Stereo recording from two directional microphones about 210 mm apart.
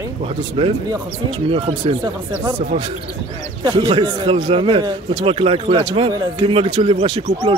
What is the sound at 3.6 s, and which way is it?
A man's voice, 20° right (ahead or behind).